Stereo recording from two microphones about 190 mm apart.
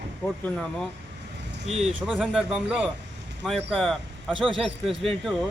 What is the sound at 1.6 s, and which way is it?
Speech, 35° right (ahead or behind).